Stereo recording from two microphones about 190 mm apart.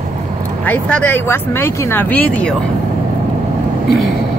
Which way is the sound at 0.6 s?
5° left (ahead or behind).